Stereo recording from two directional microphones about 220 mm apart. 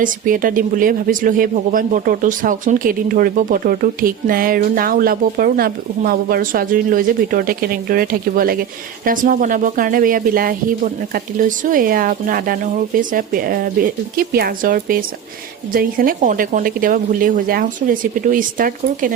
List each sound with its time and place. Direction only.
0.0 s speech: 40° right (ahead or behind)